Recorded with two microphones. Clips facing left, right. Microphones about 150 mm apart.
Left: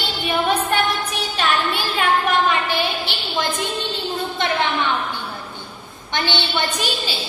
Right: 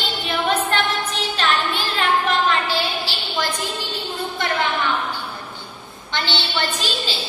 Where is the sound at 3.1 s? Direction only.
20° left (ahead or behind).